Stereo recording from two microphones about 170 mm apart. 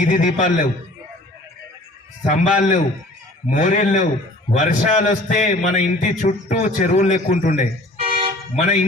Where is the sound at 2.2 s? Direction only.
45° left (ahead or behind).